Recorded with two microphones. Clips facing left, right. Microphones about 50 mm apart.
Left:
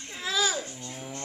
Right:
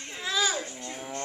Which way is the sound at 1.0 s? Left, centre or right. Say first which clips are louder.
Right 4 dB; centre.